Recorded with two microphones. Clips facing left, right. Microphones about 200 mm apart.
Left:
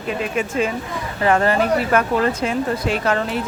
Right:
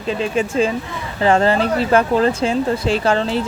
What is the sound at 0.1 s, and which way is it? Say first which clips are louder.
Speech: right 3 dB; 30° right (ahead or behind).